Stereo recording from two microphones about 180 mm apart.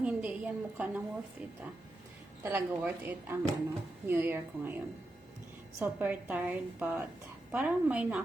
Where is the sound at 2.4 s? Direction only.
10° right (ahead or behind).